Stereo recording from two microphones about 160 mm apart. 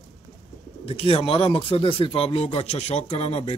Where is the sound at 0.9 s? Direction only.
35° left (ahead or behind).